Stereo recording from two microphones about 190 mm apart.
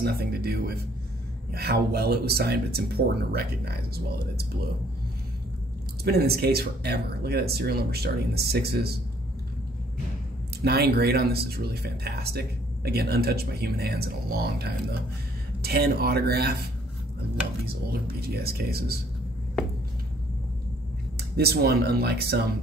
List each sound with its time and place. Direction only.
0.0 s speech: 55° right (ahead or behind)
6.0 s speech: 55° right (ahead or behind)
10.6 s speech: 55° right (ahead or behind)
17.6 s speech: 55° right (ahead or behind)
21.4 s speech: 55° right (ahead or behind)